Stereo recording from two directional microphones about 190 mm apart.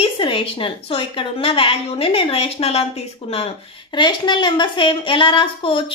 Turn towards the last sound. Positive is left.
turn(degrees=30)  # may be behind; listen again after turning